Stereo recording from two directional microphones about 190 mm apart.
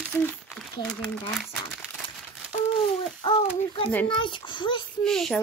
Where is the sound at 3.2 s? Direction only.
25° left (ahead or behind).